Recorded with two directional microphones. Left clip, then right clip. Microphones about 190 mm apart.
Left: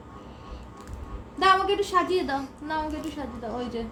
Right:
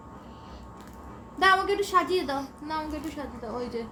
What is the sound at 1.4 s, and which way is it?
A woman's voice, 15° left (ahead or behind).